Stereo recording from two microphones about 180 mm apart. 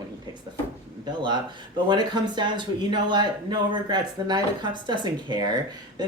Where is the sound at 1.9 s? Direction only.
25° right (ahead or behind).